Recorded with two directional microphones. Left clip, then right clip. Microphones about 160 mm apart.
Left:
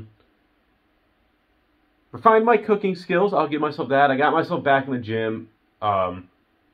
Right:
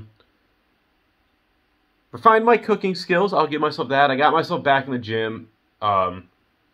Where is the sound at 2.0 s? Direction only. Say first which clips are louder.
Right 1 dB; 25° right (ahead or behind).